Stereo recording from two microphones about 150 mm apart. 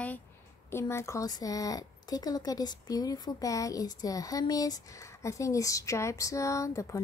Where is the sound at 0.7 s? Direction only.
20° left (ahead or behind).